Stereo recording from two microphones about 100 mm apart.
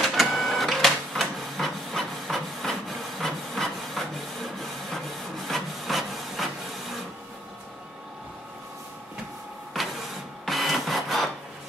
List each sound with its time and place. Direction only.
0.0 s printer: centre (ahead or behind)
9.8 s printer: centre (ahead or behind)